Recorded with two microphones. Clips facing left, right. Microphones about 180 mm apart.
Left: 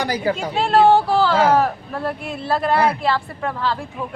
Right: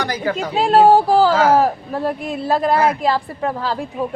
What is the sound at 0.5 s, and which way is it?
A woman's voice, 40° right (ahead or behind).